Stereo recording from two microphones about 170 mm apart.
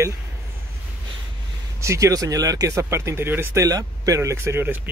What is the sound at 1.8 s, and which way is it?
Speech, 20° right (ahead or behind).